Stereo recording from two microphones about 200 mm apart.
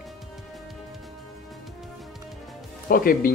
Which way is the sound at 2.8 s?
45° left (ahead or behind).